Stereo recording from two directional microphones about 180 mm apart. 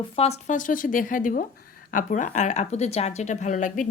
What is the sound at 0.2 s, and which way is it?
Speech, 40° left (ahead or behind).